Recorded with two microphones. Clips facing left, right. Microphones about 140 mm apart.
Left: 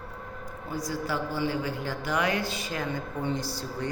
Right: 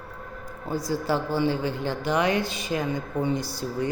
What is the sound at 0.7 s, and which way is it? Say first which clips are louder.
A woman's voice: right 5 dB; 30° right (ahead or behind).